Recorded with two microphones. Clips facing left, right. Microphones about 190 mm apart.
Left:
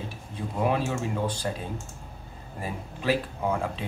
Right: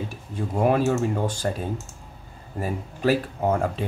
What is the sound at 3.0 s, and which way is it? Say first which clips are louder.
Speech: right 4 dB; 45° right (ahead or behind).